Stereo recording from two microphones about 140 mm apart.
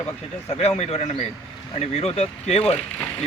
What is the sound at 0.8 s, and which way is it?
Speech, 50° left (ahead or behind).